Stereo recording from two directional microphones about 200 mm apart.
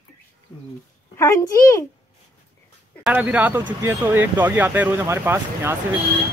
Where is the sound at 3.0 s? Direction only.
5° right (ahead or behind).